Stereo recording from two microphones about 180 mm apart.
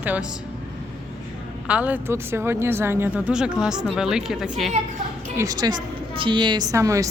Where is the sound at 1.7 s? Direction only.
10° right (ahead or behind).